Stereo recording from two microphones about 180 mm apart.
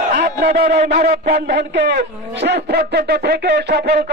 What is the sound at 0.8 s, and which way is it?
A man's voice, 60° right (ahead or behind).